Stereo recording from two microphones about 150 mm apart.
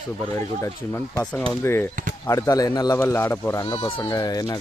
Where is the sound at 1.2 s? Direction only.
5° left (ahead or behind).